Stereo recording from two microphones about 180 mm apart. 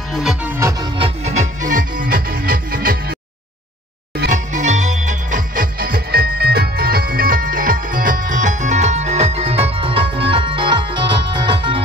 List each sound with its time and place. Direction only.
0.1 s music: centre (ahead or behind)
0.9 s music: 35° right (ahead or behind); by 3.2 s 55° right (ahead or behind)
4.3 s music: 45° right (ahead or behind); by 11.8 s 25° right (ahead or behind)